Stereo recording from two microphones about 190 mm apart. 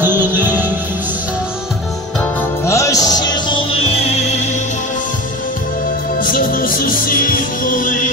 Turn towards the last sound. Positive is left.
turn(degrees=45)  # may be behind; listen again after turning